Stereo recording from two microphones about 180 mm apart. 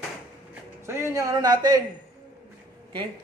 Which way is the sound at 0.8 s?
15° right (ahead or behind).